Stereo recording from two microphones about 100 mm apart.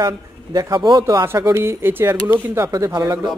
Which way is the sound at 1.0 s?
30° right (ahead or behind).